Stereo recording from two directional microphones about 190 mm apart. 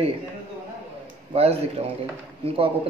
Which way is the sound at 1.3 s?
30° right (ahead or behind).